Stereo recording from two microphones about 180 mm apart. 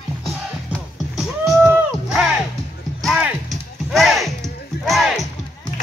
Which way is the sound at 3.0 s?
5° right (ahead or behind).